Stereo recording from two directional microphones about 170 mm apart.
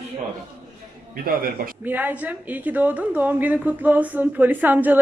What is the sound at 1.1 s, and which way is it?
Speech, 60° right (ahead or behind).